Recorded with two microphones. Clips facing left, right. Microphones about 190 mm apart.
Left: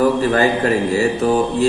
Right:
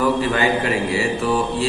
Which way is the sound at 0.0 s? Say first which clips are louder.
Left 4 dB; 40° left (ahead or behind).